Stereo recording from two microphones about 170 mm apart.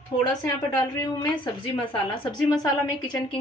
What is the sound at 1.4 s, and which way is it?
A woman's voice, 30° left (ahead or behind).